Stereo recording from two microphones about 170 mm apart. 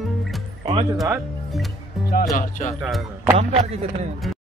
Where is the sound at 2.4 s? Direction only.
50° left (ahead or behind).